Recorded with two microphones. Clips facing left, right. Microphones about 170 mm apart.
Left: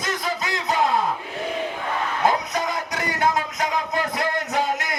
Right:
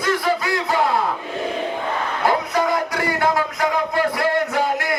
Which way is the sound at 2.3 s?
20° left (ahead or behind).